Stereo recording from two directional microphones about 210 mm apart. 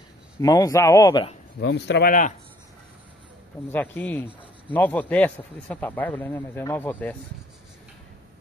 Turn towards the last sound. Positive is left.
turn(degrees=10)  # may be behind; listen again after turning